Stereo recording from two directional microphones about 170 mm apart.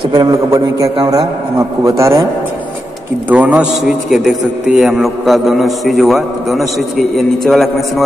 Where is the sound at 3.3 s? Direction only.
10° right (ahead or behind).